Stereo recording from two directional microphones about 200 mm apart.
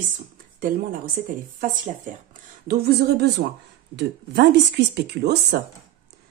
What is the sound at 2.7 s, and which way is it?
Speech, 55° right (ahead or behind).